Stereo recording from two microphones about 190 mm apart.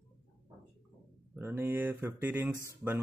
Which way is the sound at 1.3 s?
10° right (ahead or behind).